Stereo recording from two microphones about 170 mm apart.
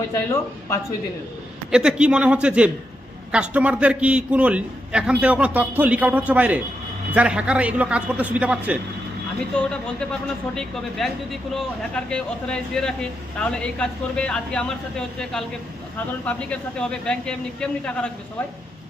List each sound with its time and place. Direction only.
0.1 s speech: 20° left (ahead or behind)
1.7 s a man's voice: 5° right (ahead or behind)
9.6 s speech: 5° left (ahead or behind)